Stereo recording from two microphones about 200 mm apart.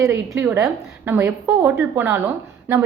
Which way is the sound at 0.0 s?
10° right (ahead or behind).